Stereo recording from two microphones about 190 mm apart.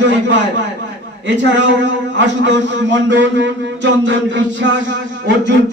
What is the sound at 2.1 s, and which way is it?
A man's voice, 70° right (ahead or behind).